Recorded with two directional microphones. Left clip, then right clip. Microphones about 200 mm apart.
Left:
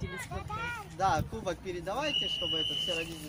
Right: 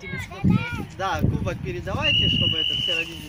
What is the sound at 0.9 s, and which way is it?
Speech, 55° left (ahead or behind).